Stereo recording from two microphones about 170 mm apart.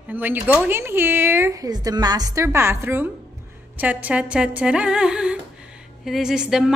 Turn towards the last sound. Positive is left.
turn(degrees=-5)  # may be behind; listen again after turning